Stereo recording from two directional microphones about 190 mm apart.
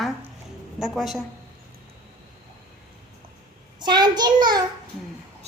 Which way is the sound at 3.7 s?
25° right (ahead or behind).